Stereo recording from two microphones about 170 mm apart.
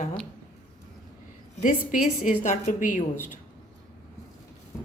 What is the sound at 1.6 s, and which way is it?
A woman's voice, 50° left (ahead or behind).